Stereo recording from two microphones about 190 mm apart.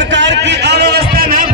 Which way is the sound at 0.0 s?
70° right (ahead or behind).